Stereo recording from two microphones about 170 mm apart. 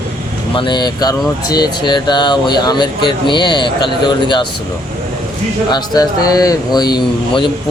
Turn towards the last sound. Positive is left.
turn(degrees=25)  # may be behind; listen again after turning